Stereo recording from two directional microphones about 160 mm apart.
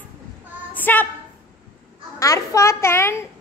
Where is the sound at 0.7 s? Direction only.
10° left (ahead or behind).